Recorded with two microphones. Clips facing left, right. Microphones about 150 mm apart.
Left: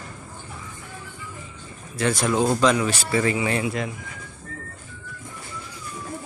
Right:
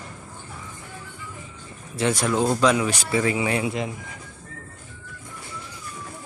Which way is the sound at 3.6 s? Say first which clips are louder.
Even; 20° right (ahead or behind).